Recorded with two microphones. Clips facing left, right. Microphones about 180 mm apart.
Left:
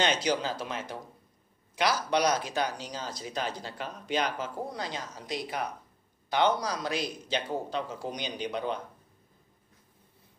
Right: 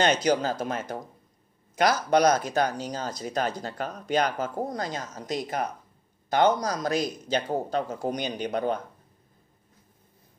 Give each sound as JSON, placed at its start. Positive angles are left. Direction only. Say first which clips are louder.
{"t": 0.0, "sound": "speech", "louder": "right 5 dB", "side_deg": -45}